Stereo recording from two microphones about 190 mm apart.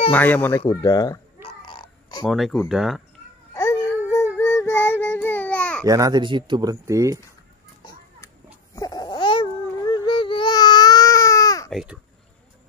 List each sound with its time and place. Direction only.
0.1 s speech: 10° left (ahead or behind)
1.6 s a sound: 25° left (ahead or behind)
2.2 s speech: centre (ahead or behind)
4.1 s child singing: 15° left (ahead or behind)
5.9 s speech: 20° right (ahead or behind)
8.7 s babbling: 20° left (ahead or behind)
11.7 s a child's voice: 5° right (ahead or behind)